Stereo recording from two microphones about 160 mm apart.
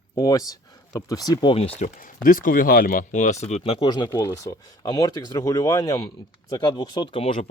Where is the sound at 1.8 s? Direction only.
60° left (ahead or behind); by 3.8 s 40° left (ahead or behind).